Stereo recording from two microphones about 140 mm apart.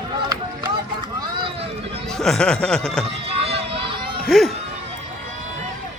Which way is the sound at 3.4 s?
40° right (ahead or behind).